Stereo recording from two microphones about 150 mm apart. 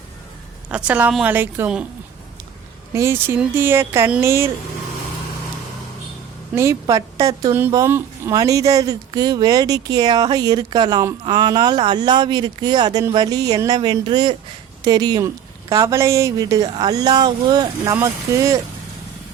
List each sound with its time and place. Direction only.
0.7 s speech: 10° right (ahead or behind)
2.9 s speech: 15° right (ahead or behind)
6.5 s speech: 20° right (ahead or behind)